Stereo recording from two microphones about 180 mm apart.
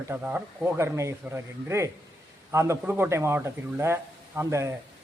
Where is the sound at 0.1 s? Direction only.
10° right (ahead or behind).